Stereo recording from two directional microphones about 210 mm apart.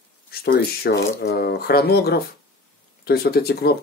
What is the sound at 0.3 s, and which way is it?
Speech, 45° left (ahead or behind).